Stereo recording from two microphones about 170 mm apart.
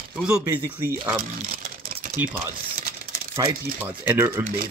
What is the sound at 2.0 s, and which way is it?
Typewriter, 50° right (ahead or behind).